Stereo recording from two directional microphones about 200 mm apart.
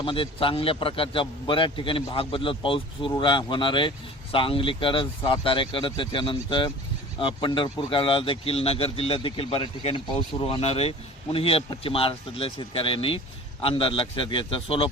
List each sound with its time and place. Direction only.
0.0 s a man's voice: 25° left (ahead or behind)